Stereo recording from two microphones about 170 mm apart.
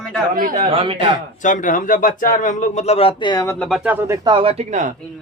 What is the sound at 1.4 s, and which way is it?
Speech, 50° left (ahead or behind).